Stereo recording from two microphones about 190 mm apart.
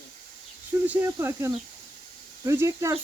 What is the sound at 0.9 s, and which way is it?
Speech, 10° right (ahead or behind).